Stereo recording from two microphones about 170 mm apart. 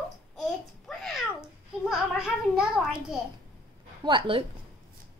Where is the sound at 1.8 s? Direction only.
5° right (ahead or behind).